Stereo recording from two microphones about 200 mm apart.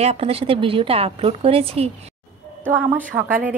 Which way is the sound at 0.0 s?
30° right (ahead or behind).